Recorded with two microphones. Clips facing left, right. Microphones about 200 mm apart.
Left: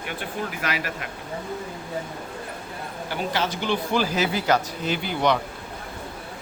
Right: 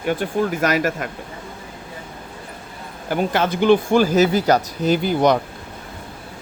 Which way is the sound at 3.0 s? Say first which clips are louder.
Right 7 dB; 50° right (ahead or behind).